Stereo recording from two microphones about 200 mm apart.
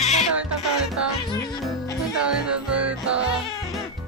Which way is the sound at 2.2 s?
5° right (ahead or behind).